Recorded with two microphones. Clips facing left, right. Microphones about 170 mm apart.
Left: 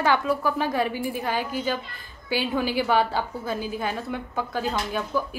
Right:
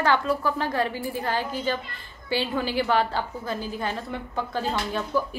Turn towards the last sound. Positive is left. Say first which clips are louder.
# right 1 dB
turn(degrees=5)  # may be behind; listen again after turning